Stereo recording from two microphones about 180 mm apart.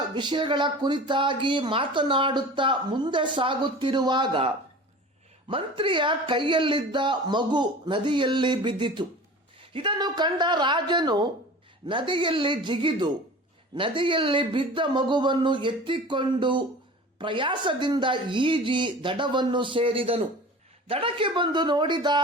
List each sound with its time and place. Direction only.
0.1 s speech: 25° right (ahead or behind)